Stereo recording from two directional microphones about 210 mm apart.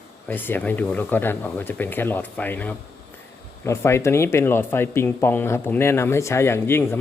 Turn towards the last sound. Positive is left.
turn(degrees=10)  # may be behind; listen again after turning